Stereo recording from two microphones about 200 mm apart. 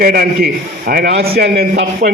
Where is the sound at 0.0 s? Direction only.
50° right (ahead or behind).